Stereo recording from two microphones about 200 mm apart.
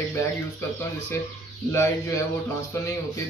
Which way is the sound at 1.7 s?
15° left (ahead or behind).